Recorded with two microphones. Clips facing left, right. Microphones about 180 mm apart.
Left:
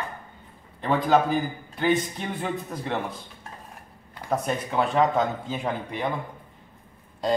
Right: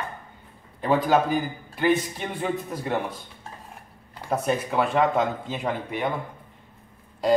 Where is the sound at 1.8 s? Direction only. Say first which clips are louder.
Right 1 dB; centre (ahead or behind).